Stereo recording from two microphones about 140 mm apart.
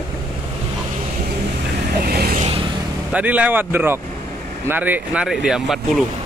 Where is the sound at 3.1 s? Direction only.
10° right (ahead or behind).